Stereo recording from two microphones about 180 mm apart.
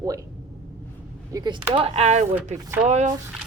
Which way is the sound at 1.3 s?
25° right (ahead or behind).